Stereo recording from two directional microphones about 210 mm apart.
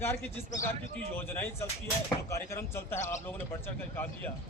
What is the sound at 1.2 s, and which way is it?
Speech, 10° left (ahead or behind).